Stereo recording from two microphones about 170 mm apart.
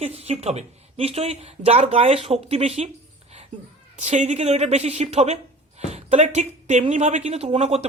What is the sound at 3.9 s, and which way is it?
Speech, 40° right (ahead or behind).